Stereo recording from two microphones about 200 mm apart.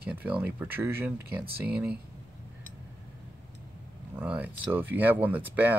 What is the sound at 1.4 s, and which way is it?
Speech, 50° right (ahead or behind).